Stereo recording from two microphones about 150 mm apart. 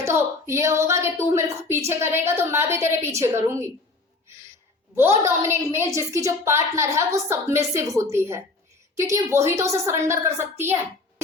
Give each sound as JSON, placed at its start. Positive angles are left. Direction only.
{"t": 0.0, "sound": "a woman's voice", "side_deg": -15}
{"t": 4.9, "sound": "a woman's voice", "side_deg": -15}